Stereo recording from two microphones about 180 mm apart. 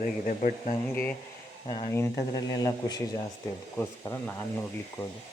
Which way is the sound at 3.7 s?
10° left (ahead or behind).